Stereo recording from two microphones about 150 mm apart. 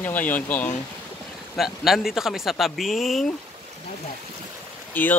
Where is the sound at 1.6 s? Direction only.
Centre (ahead or behind).